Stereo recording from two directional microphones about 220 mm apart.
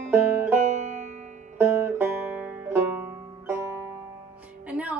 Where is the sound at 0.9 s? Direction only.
35° right (ahead or behind).